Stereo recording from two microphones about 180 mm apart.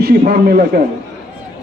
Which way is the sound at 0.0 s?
55° right (ahead or behind).